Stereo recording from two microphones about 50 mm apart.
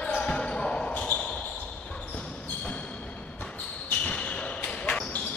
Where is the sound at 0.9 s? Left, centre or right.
Left.